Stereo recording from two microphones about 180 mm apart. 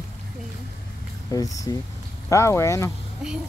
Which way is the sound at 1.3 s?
20° left (ahead or behind).